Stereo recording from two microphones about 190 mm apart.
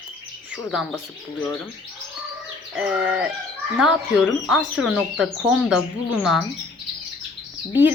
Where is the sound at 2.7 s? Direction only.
5° right (ahead or behind).